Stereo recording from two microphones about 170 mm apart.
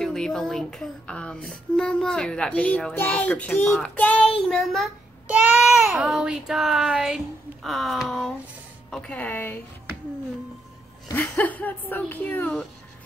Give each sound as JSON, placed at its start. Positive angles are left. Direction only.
{"t": 0.0, "sound": "a sound", "side_deg": 5}
{"t": 8.9, "sound": "a woman's voice", "side_deg": 5}
{"t": 11.1, "sound": "a woman's voice", "side_deg": 10}